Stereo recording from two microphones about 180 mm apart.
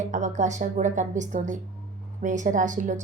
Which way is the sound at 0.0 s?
40° right (ahead or behind).